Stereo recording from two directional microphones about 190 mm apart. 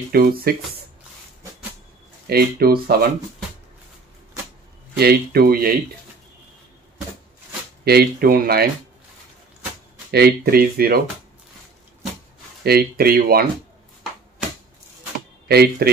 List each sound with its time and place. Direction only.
0.1 s speech: 55° right (ahead or behind)
2.2 s speech: 55° right (ahead or behind)
4.9 s speech: 55° right (ahead or behind)
7.8 s speech: 55° right (ahead or behind)
10.1 s speech: 55° right (ahead or behind)
12.6 s speech: 55° right (ahead or behind)
15.4 s speech: 55° right (ahead or behind)